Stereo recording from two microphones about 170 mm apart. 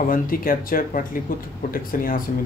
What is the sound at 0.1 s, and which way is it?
Speech, 55° left (ahead or behind).